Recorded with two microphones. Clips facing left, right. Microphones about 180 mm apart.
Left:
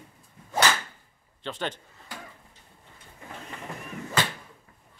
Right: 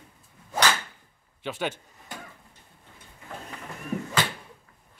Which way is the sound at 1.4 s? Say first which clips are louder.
Right 2 dB; 10° right (ahead or behind).